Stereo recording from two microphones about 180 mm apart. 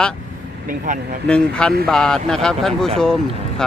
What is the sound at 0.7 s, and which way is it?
Speech, 50° right (ahead or behind).